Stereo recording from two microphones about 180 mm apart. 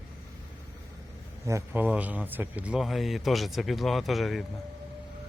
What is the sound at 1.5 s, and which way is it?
A man's voice, 15° right (ahead or behind).